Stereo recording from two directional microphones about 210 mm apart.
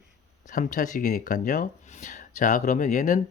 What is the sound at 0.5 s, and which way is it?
Speech, 40° left (ahead or behind).